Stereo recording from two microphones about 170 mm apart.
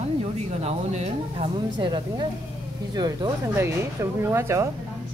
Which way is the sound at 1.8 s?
25° right (ahead or behind).